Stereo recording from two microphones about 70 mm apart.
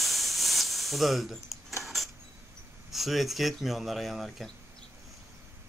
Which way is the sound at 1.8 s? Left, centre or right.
Centre.